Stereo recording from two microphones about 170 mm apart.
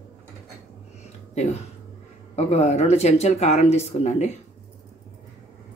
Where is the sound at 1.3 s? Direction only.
40° left (ahead or behind).